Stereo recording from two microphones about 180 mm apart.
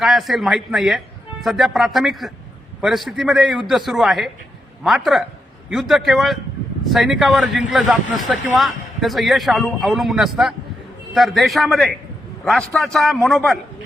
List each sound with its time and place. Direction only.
0.0 s a man's voice: centre (ahead or behind)